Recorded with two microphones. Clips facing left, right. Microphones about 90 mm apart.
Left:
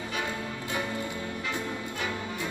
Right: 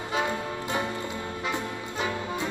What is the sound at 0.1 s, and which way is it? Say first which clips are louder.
Music: right 7 dB; 20° right (ahead or behind).